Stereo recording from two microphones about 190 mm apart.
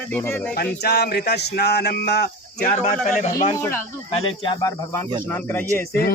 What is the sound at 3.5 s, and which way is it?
Speech, 10° left (ahead or behind).